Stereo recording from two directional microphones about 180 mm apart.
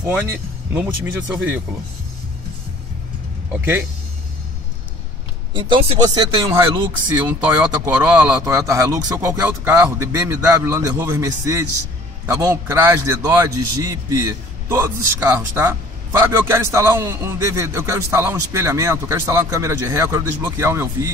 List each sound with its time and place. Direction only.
1.0 s a man's voice: 10° right (ahead or behind)
5.5 s speech: 25° right (ahead or behind)
6.4 s speech: 15° right (ahead or behind)
7.6 s a man's voice: 10° right (ahead or behind)